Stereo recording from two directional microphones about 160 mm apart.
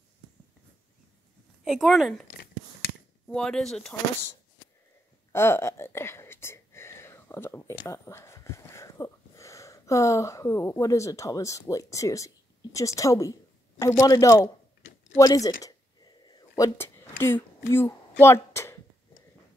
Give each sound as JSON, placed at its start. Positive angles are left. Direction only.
{"t": 1.6, "sound": "speech", "side_deg": 0}
{"t": 2.3, "sound": "a sound", "side_deg": 75}
{"t": 3.3, "sound": "speech", "side_deg": 5}
{"t": 5.3, "sound": "whispering", "side_deg": 15}
{"t": 12.7, "sound": "a woman's voice", "side_deg": 20}
{"t": 15.1, "sound": "a sound", "side_deg": 20}